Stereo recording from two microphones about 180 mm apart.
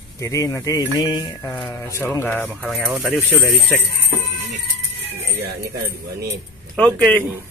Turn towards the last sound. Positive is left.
turn(degrees=5)  # may be behind; listen again after turning